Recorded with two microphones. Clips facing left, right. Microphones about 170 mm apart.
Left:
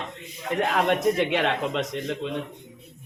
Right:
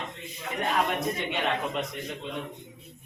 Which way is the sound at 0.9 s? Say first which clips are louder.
Left 8 dB; 90° left.